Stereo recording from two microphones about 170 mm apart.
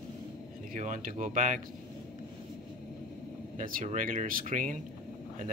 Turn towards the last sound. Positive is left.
turn(degrees=-50)  # may be behind; listen again after turning